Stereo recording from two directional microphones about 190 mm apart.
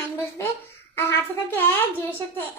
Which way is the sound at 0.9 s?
10° left (ahead or behind).